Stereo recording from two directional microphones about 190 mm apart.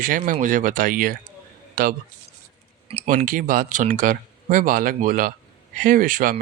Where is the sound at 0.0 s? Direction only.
45° right (ahead or behind).